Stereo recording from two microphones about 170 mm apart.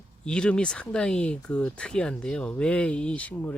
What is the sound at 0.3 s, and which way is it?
Speech, 5° left (ahead or behind).